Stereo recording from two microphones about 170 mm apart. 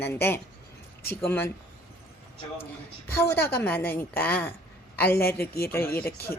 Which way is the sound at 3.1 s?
15° left (ahead or behind).